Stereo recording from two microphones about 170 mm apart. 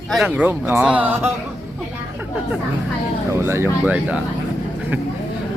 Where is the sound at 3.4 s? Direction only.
15° right (ahead or behind).